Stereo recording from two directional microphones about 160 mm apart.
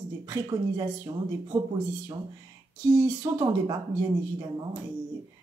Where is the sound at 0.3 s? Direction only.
25° right (ahead or behind).